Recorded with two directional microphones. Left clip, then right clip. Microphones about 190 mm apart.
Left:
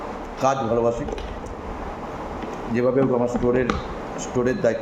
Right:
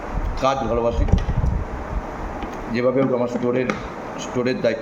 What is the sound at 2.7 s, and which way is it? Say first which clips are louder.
A man's voice: right 1 dB; 5° left (ahead or behind).